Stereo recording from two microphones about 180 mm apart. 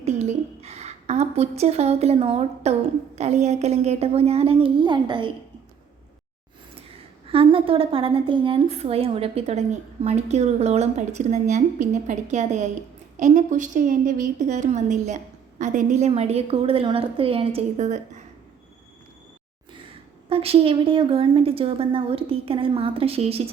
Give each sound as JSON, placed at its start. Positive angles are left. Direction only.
{"t": 0.0, "sound": "a sound", "side_deg": -35}
{"t": 3.2, "sound": "a woman's voice", "side_deg": -40}
{"t": 7.3, "sound": "a woman's voice", "side_deg": -30}
{"t": 20.3, "sound": "a woman's voice", "side_deg": -35}